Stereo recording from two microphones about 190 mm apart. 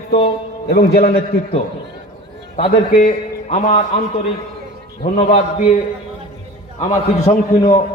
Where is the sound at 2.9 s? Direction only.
40° left (ahead or behind).